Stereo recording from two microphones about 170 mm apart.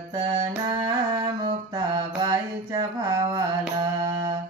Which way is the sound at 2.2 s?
20° right (ahead or behind).